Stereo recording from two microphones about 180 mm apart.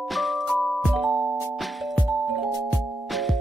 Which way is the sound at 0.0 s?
Centre (ahead or behind).